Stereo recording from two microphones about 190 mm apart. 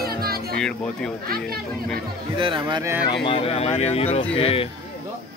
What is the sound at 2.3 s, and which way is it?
Speech, 25° right (ahead or behind).